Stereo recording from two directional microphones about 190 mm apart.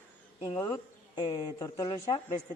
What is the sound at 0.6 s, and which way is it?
Speech, 15° left (ahead or behind).